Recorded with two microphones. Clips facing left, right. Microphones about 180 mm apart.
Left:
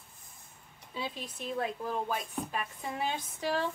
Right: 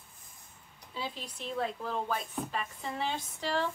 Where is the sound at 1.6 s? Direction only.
15° left (ahead or behind).